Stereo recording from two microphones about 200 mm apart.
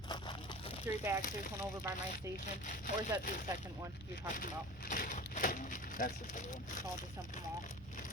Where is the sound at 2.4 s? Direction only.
40° left (ahead or behind).